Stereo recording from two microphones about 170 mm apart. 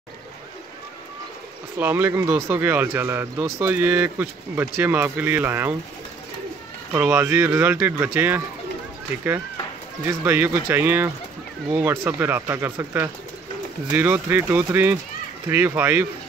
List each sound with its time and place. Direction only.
1.8 s speech: 10° right (ahead or behind)
6.9 s speech: 10° right (ahead or behind)
10.0 s speech: 15° right (ahead or behind)